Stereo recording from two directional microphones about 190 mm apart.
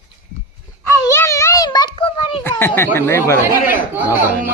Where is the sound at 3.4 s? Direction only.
10° right (ahead or behind).